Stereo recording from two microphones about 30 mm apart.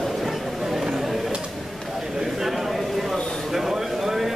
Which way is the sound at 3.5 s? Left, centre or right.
Centre.